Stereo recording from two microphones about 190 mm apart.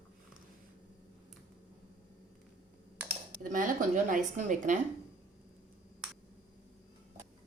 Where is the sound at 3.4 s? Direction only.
45° right (ahead or behind).